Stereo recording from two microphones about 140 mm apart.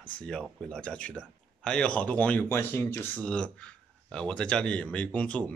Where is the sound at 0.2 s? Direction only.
5° left (ahead or behind).